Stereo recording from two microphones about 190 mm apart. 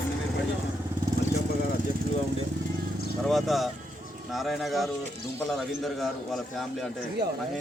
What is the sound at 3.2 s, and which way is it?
A man's voice, centre (ahead or behind).